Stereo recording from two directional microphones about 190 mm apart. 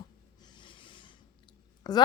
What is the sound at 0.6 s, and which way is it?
Rub, 25° left (ahead or behind).